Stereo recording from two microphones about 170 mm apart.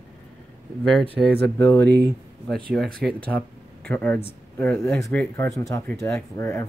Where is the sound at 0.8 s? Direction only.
5° left (ahead or behind).